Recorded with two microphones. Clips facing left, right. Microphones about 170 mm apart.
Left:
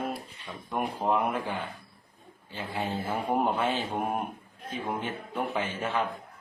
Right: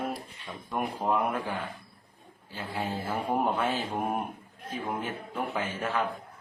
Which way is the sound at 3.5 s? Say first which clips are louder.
Left 1 dB; 10° left (ahead or behind).